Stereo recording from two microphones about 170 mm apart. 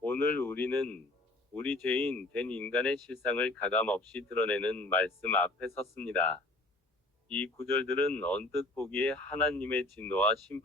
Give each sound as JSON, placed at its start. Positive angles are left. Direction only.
{"t": 0.0, "sound": "speech", "side_deg": 10}